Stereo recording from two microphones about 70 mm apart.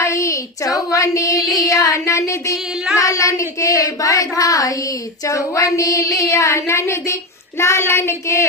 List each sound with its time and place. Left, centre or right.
0.0 s child singing: left
2.9 s speech: left
5.3 s child singing: left